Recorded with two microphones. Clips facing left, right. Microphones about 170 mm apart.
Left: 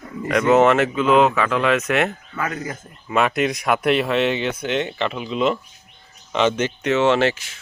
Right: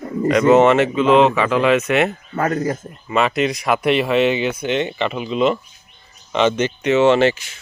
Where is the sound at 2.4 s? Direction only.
40° right (ahead or behind).